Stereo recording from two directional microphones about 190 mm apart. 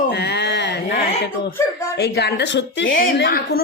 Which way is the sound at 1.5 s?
15° left (ahead or behind).